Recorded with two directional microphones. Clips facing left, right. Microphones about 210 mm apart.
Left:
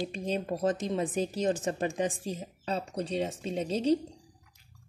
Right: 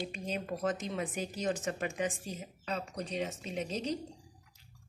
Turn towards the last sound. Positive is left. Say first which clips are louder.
# left 8 dB
turn(degrees=30)  # may be behind; listen again after turning